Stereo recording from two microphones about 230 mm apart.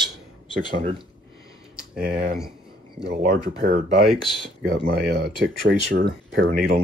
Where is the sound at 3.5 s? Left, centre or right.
Right.